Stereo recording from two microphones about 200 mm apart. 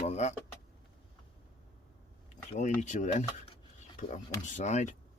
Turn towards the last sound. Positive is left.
turn(degrees=35)  # may be behind; listen again after turning